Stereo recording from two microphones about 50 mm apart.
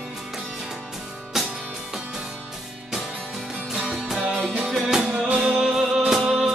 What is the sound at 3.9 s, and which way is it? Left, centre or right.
Music, centre.